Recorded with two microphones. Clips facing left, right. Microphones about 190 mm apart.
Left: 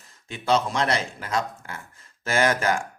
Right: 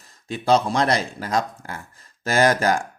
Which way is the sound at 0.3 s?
35° right (ahead or behind).